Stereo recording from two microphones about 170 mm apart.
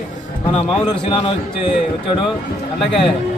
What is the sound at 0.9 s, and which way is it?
Speech, 30° left (ahead or behind).